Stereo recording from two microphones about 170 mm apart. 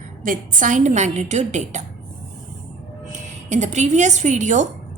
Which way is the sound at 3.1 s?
45° right (ahead or behind).